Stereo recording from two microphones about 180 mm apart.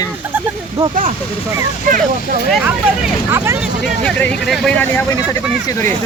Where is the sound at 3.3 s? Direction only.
15° right (ahead or behind).